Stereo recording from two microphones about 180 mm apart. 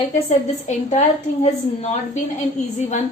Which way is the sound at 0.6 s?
40° left (ahead or behind).